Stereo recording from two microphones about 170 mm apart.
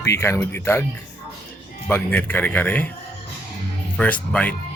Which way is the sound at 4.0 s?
10° left (ahead or behind).